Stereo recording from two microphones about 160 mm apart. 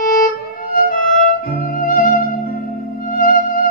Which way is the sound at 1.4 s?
60° left (ahead or behind).